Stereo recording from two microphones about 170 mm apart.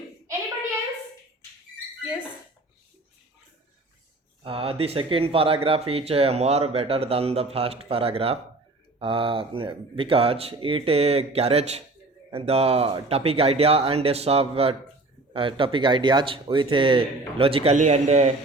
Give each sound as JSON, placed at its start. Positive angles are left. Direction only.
{"t": 4.4, "sound": "speech", "side_deg": -35}